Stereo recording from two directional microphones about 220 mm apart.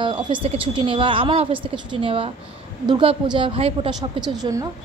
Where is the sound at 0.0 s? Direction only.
20° right (ahead or behind).